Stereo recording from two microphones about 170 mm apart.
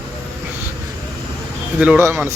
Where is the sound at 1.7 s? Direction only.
10° right (ahead or behind).